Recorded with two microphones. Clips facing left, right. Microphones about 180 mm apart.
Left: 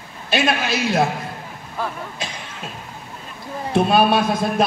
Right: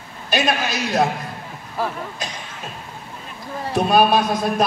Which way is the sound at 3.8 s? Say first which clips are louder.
Right 2 dB; 25° left (ahead or behind).